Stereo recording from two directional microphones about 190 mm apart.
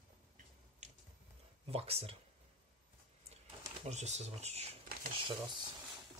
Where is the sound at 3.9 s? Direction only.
35° right (ahead or behind).